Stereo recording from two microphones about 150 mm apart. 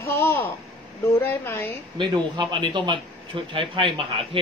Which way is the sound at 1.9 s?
30° right (ahead or behind).